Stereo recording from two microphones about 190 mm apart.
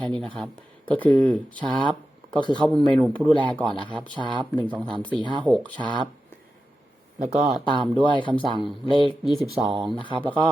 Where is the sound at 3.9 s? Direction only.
25° right (ahead or behind).